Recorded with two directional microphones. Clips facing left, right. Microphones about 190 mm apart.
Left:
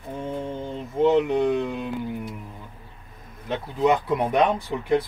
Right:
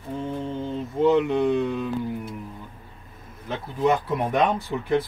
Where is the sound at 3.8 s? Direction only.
20° left (ahead or behind).